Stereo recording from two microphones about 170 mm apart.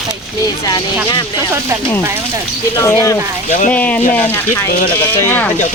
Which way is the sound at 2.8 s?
15° left (ahead or behind).